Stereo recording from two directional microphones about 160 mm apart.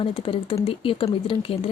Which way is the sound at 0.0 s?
35° left (ahead or behind).